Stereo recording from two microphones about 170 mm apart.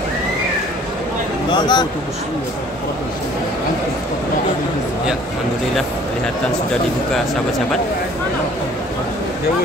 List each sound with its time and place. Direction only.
1.5 s speech: 25° left (ahead or behind)